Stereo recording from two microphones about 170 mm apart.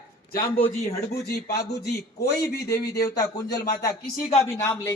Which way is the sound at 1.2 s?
65° left (ahead or behind).